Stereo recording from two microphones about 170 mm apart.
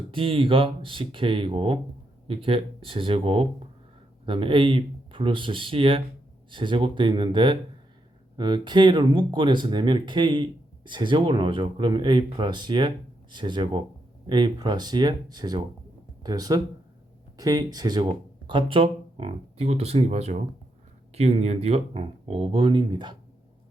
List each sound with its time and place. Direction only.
0.1 s speech: 30° right (ahead or behind)